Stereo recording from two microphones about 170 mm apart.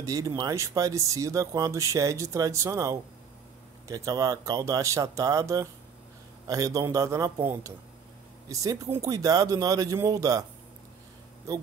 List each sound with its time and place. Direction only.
0.0 s speech: 20° right (ahead or behind)
8.5 s speech: 20° right (ahead or behind)